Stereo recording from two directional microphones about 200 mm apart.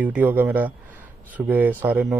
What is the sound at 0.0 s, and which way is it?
A man's voice, 10° right (ahead or behind).